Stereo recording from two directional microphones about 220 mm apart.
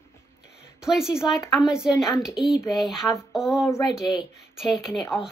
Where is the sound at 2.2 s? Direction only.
Centre (ahead or behind).